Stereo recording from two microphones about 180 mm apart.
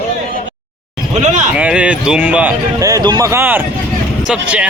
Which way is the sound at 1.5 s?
5° right (ahead or behind).